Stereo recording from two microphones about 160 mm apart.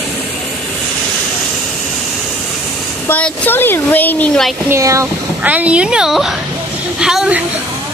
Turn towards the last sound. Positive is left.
turn(degrees=-5)  # may be behind; listen again after turning